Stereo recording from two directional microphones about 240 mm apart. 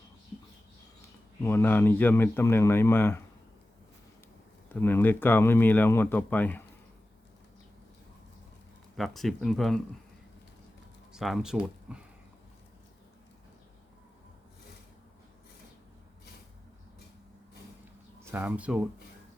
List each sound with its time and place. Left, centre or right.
1.4 s speech: centre
4.7 s speech: centre
9.0 s speech: centre
11.1 s speech: centre
18.3 s speech: centre